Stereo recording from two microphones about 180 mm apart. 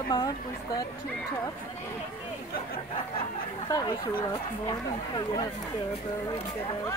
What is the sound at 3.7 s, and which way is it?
Speech, 20° left (ahead or behind).